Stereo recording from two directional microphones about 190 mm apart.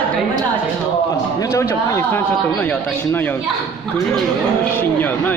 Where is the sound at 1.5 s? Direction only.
15° left (ahead or behind).